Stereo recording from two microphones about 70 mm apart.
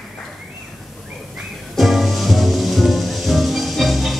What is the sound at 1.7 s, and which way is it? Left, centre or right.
Music, centre.